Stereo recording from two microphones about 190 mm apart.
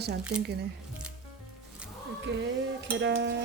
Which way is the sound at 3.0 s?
70° right (ahead or behind).